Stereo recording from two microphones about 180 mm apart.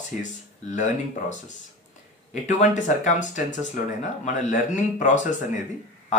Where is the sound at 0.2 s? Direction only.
40° left (ahead or behind).